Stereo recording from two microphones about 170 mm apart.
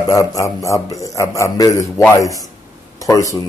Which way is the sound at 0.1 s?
20° left (ahead or behind).